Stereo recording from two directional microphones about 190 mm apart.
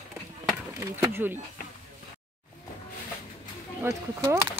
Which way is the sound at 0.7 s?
15° right (ahead or behind).